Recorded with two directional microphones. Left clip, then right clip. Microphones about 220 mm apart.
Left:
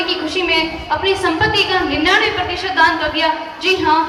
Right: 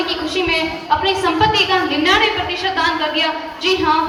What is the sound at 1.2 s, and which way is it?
A woman's voice, 25° right (ahead or behind).